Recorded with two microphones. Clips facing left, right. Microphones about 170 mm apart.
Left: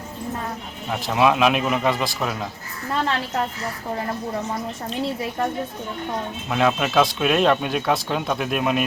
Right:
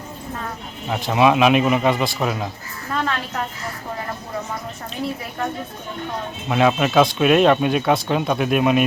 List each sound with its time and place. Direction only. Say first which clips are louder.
0.9 s speech: right 2 dB; centre (ahead or behind)
2.9 s a woman's voice: left 1 dB; 30° left (ahead or behind)
6.5 s speech: right 3 dB; 5° right (ahead or behind)